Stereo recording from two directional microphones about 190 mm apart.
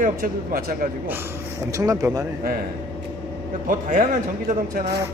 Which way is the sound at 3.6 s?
45° right (ahead or behind).